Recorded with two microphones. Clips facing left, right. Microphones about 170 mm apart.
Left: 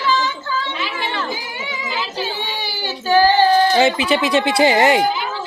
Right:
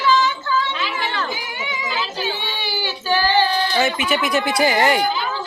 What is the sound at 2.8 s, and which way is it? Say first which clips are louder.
Child singing: left 7 dB; 40° left (ahead or behind).